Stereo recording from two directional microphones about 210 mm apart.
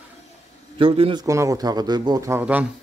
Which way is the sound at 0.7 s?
25° right (ahead or behind).